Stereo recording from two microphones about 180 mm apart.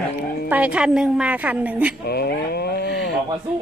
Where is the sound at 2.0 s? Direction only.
60° left (ahead or behind).